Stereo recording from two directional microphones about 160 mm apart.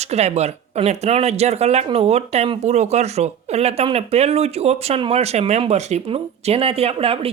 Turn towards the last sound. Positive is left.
turn(degrees=-35)  # may be behind; listen again after turning